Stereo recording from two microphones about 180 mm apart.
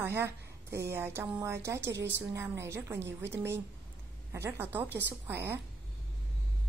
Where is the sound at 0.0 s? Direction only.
10° right (ahead or behind).